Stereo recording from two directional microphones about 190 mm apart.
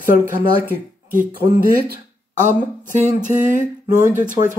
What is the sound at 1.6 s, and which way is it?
Speech, 50° right (ahead or behind).